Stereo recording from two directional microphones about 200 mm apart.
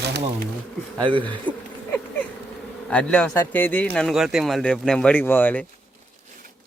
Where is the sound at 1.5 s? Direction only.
5° left (ahead or behind).